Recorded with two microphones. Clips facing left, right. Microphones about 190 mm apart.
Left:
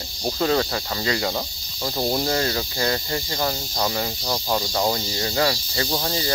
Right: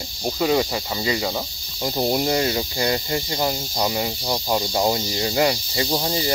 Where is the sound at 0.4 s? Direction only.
10° right (ahead or behind).